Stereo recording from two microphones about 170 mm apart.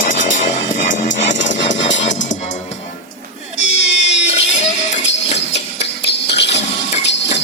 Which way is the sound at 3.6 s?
90° left.